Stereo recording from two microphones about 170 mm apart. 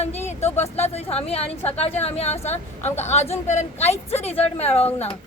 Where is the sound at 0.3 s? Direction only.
40° left (ahead or behind).